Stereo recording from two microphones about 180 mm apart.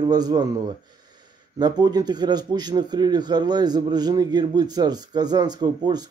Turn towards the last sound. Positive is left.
turn(degrees=-25)  # may be behind; listen again after turning